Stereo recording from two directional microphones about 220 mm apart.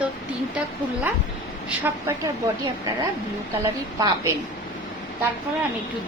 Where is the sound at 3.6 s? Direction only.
15° right (ahead or behind).